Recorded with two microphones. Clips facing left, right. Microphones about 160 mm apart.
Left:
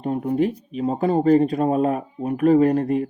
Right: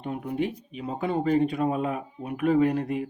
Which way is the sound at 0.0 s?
40° left (ahead or behind).